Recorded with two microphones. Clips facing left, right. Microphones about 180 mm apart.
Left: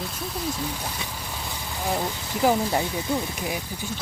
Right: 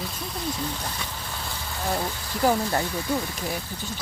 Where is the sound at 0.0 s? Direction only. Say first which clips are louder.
Left 1 dB; 5° left (ahead or behind).